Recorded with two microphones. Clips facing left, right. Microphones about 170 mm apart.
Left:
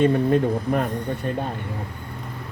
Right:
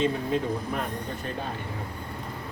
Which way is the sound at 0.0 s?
55° left (ahead or behind).